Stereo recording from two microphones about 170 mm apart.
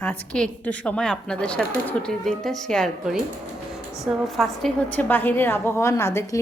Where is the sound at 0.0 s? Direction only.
5° left (ahead or behind).